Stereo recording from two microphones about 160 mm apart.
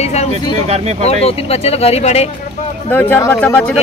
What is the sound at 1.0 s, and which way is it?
Speech, 40° left (ahead or behind).